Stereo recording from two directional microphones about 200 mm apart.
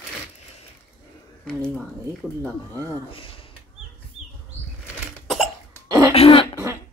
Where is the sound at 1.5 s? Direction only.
5° left (ahead or behind).